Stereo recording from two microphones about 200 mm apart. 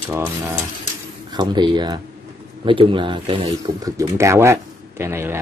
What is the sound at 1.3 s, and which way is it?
Speech, 20° right (ahead or behind).